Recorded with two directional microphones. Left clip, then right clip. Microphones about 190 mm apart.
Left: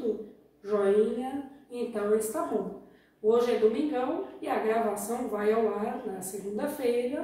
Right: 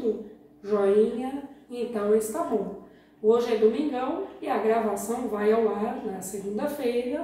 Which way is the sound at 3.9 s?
Centre (ahead or behind).